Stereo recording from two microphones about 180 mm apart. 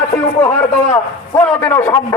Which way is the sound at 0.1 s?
15° left (ahead or behind).